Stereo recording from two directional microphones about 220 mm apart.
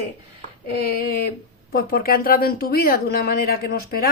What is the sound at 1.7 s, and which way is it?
A woman's voice, 40° left (ahead or behind).